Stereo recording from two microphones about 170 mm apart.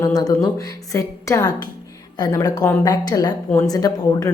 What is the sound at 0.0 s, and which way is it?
A woman's voice, 20° left (ahead or behind).